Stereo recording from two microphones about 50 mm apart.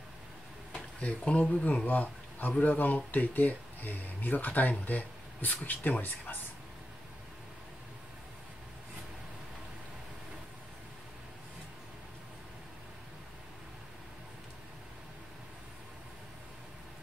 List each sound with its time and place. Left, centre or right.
1.0 s a man's voice: left